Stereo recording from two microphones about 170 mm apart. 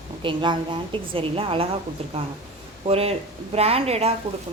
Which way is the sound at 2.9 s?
35° right (ahead or behind).